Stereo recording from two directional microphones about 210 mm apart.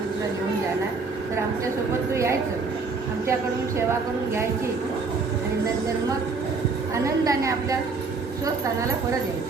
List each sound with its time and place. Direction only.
6.9 s a woman's voice: 15° right (ahead or behind)